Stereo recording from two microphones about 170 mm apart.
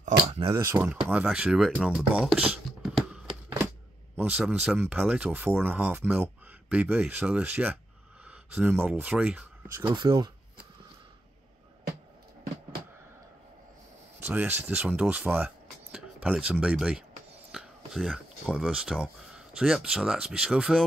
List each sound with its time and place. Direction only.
0.0 s a sound: 35° right (ahead or behind)
0.6 s speech: 10° right (ahead or behind)
2.8 s a sound: centre (ahead or behind)
4.2 s speech: 5° right (ahead or behind)
9.9 s speech: 25° right (ahead or behind)
14.2 s speech: 10° right (ahead or behind)